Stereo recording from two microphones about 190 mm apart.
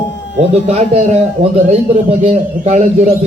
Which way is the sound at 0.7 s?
35° right (ahead or behind).